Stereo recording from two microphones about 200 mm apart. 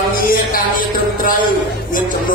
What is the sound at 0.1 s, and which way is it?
Music, 45° left (ahead or behind).